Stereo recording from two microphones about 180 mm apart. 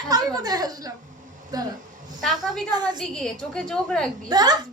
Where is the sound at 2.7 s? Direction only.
25° right (ahead or behind).